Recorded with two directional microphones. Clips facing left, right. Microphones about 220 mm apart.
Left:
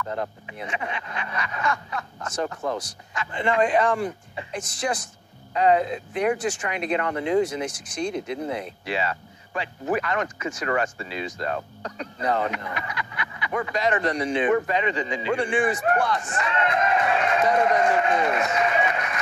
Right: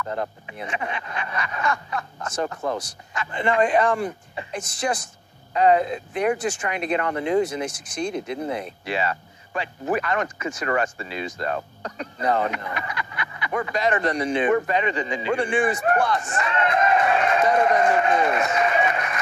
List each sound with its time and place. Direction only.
0.0 s speech: 45° right (ahead or behind)